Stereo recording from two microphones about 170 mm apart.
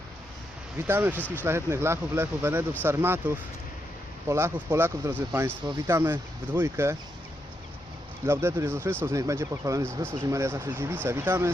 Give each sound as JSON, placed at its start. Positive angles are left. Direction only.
{"t": 0.9, "sound": "speech", "side_deg": -10}
{"t": 8.2, "sound": "speech", "side_deg": -15}